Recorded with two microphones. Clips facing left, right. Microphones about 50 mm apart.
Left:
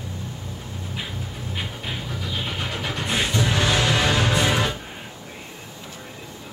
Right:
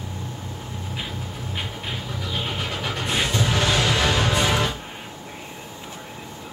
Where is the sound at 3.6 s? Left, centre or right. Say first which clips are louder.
Even; left.